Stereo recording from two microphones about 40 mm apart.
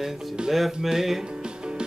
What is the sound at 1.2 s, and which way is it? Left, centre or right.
Music, right.